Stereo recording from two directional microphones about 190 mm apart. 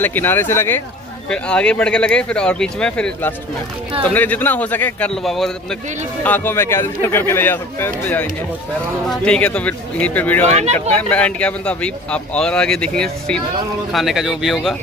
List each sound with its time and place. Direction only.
0.0 s speech: 10° left (ahead or behind)
10.4 s speech: 35° right (ahead or behind)
11.0 s speech: 5° left (ahead or behind)